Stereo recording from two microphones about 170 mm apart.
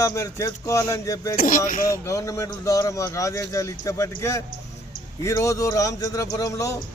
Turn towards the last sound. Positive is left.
turn(degrees=20)  # may be behind; listen again after turning